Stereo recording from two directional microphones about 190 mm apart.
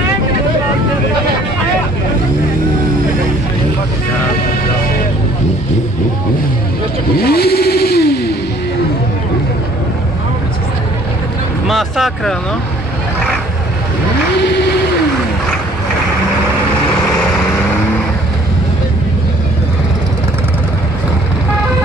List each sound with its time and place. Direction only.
7.2 s vehicle: 55° left (ahead or behind)
11.6 s vehicle: centre (ahead or behind)
14.5 s vehicle: 60° left (ahead or behind)